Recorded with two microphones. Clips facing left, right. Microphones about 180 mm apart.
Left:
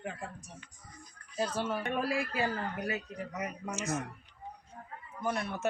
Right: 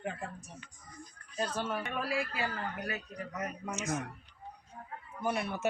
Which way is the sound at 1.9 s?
40° left (ahead or behind).